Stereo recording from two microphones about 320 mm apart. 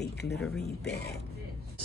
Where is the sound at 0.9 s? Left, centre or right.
Left.